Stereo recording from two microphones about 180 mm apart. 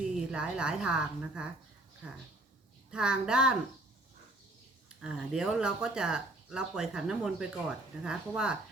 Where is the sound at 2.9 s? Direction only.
5° right (ahead or behind).